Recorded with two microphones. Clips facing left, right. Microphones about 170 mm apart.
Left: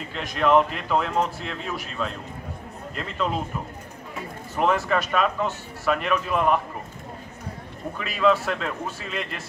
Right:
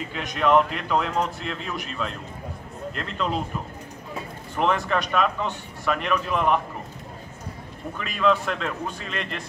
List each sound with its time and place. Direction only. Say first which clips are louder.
0.1 s a man's voice: left 1 dB; centre (ahead or behind)
4.6 s a man's voice: left 1 dB; 5° left (ahead or behind)
8.0 s a man's voice: left 1 dB; 5° left (ahead or behind)